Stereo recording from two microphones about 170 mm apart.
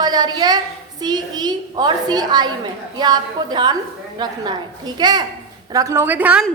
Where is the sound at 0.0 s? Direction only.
25° right (ahead or behind).